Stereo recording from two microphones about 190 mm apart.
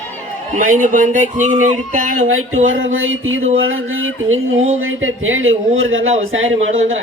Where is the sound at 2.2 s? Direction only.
90° right.